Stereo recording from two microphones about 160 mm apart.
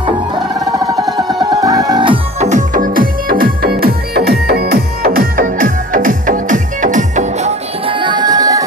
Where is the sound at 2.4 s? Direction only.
50° right (ahead or behind).